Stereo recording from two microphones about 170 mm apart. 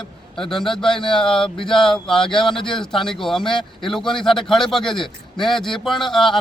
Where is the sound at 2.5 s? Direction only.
30° left (ahead or behind).